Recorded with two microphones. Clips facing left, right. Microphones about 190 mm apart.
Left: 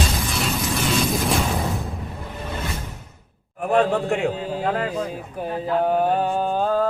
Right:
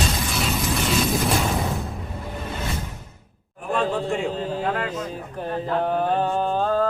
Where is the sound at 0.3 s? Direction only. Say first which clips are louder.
Even; centre (ahead or behind).